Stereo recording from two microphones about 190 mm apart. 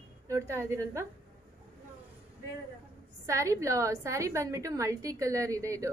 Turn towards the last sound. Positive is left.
turn(degrees=-15)  # may be behind; listen again after turning